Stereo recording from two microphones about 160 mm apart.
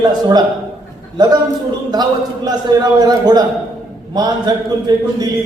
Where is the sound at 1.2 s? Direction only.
25° right (ahead or behind).